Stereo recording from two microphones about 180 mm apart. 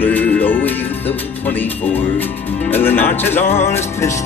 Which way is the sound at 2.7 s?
10° left (ahead or behind).